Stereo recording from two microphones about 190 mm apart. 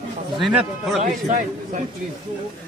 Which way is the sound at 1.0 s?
40° right (ahead or behind).